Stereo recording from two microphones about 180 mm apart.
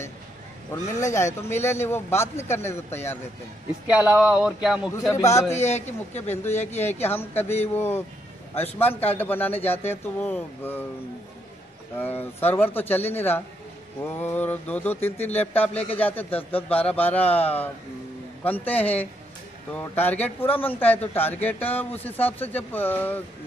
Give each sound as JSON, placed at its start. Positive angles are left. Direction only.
{"t": 0.7, "sound": "a man's voice", "side_deg": 15}
{"t": 3.8, "sound": "speech", "side_deg": -10}
{"t": 5.1, "sound": "a man's voice", "side_deg": 15}
{"t": 5.5, "sound": "a man's voice", "side_deg": 40}
{"t": 6.3, "sound": "a man's voice", "side_deg": 10}
{"t": 12.0, "sound": "a man's voice", "side_deg": 10}